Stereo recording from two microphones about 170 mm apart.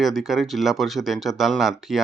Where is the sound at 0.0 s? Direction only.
Centre (ahead or behind).